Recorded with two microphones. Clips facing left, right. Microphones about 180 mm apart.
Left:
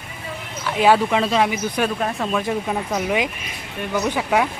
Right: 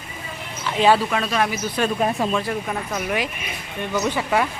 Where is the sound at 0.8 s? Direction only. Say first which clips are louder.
Left 1 dB; 10° left (ahead or behind).